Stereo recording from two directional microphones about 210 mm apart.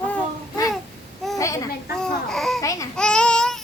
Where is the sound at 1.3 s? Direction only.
15° left (ahead or behind).